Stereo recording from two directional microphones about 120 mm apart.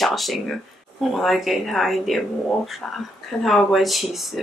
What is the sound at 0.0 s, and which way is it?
Speech, centre (ahead or behind).